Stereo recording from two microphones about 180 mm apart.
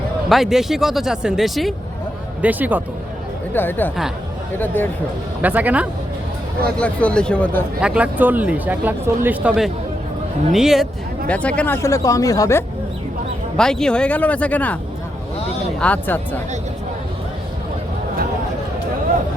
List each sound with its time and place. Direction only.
0.3 s speech: centre (ahead or behind)
3.5 s speech: 10° left (ahead or behind)
5.4 s speech: 10° right (ahead or behind)
6.7 s speech: 5° left (ahead or behind)
7.8 s speech: 5° right (ahead or behind); by 12.6 s 15° left (ahead or behind)
13.6 s speech: 5° left (ahead or behind)
15.8 s speech: 10° left (ahead or behind)